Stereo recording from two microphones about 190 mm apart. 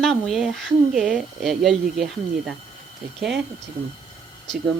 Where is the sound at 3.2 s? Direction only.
Centre (ahead or behind).